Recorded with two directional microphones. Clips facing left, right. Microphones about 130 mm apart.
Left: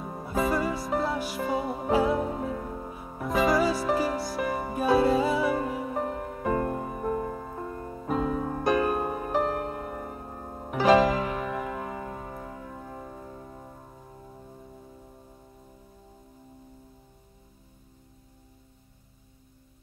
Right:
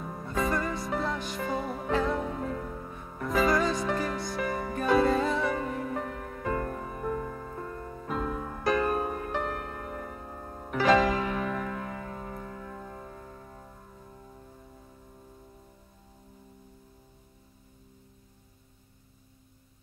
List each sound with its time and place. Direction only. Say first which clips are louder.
0.2 s music: left 3 dB; 5° left (ahead or behind)
3.3 s music: left 2 dB; centre (ahead or behind)
6.0 s music: left 4 dB; 25° left (ahead or behind)
8.6 s music: left 1 dB; 10° left (ahead or behind)
9.4 s music: left 6 dB; 25° left (ahead or behind)
9.8 s music: left 2 dB; 10° left (ahead or behind)
10.1 s music: left 2 dB; 25° left (ahead or behind)
11.4 s music: left 1 dB; 15° left (ahead or behind)